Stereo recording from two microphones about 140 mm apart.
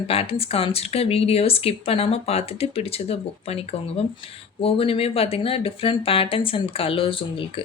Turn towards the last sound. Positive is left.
turn(degrees=40)  # may be behind; listen again after turning